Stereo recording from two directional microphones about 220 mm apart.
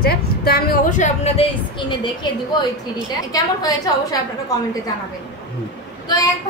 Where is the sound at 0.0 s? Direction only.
45° left (ahead or behind); by 2.0 s 25° left (ahead or behind).